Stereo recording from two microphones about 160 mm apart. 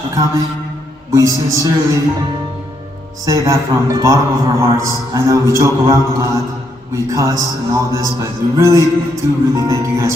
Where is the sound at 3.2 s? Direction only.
20° right (ahead or behind).